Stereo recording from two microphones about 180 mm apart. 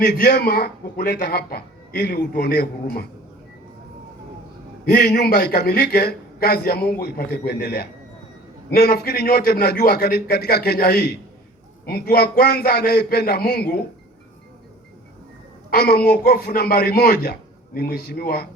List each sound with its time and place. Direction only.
0.0 s a man's voice: 65° left (ahead or behind)
4.9 s a man's voice: 60° left (ahead or behind)
15.7 s a man's voice: 60° left (ahead or behind)